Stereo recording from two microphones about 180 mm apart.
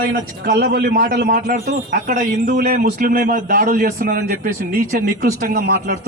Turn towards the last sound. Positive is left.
turn(degrees=-55)  # may be behind; listen again after turning